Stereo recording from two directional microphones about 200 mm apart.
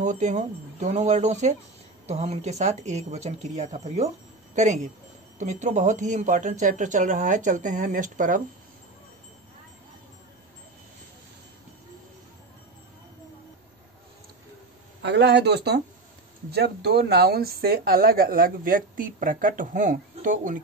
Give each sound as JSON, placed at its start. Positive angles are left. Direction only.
{"t": 0.0, "sound": "speech", "side_deg": -35}
{"t": 15.0, "sound": "speech", "side_deg": -60}